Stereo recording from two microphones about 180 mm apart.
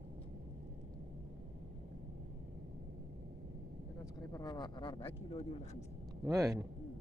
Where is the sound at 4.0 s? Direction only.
20° left (ahead or behind).